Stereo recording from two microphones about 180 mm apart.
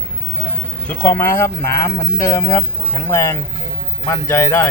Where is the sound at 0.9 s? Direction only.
10° left (ahead or behind).